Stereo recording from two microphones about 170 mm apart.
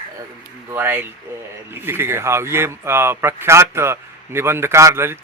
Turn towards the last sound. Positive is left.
turn(degrees=-15)  # may be behind; listen again after turning